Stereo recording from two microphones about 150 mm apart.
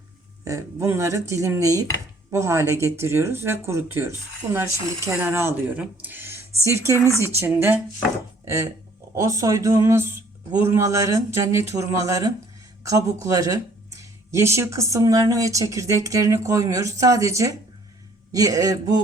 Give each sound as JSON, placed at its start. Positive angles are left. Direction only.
{"t": 0.4, "sound": "speech", "side_deg": -20}
{"t": 9.1, "sound": "speech", "side_deg": -20}